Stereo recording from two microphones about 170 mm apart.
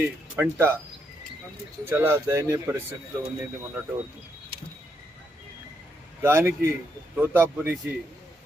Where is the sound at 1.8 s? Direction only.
15° right (ahead or behind).